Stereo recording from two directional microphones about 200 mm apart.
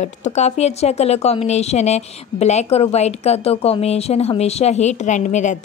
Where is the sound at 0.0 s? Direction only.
35° left (ahead or behind).